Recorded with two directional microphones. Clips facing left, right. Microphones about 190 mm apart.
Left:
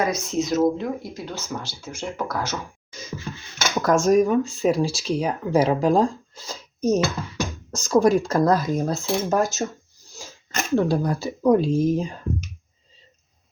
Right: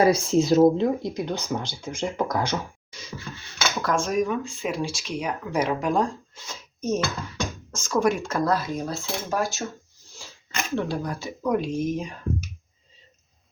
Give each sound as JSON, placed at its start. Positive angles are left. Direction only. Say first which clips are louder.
{"t": 0.0, "sound": "speech", "louder": "right 4 dB", "side_deg": -30}
{"t": 3.8, "sound": "speech", "louder": "left 7 dB", "side_deg": 45}